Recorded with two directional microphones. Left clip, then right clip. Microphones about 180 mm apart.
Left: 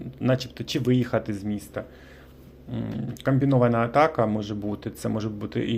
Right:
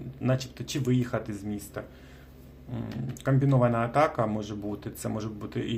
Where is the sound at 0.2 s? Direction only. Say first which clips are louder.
Left 5 dB; 30° left (ahead or behind).